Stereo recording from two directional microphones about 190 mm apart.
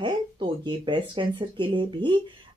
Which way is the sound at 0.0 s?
25° right (ahead or behind).